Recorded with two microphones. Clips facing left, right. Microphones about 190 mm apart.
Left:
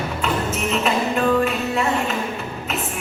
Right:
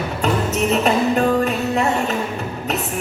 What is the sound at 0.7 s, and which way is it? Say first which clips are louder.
Music: right 4 dB; 40° right (ahead or behind).